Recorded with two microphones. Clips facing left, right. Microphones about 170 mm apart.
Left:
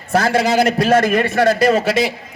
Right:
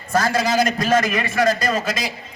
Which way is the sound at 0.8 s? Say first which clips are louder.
Left 5 dB; 60° left (ahead or behind).